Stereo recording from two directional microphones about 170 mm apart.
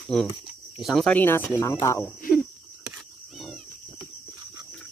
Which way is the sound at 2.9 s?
Centre (ahead or behind).